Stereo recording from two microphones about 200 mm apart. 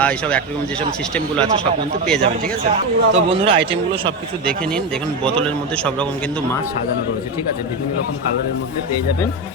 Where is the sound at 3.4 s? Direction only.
25° right (ahead or behind).